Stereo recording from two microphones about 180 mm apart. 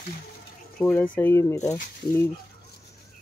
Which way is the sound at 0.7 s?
10° left (ahead or behind).